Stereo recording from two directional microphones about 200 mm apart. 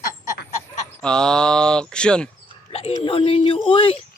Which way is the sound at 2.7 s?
30° left (ahead or behind).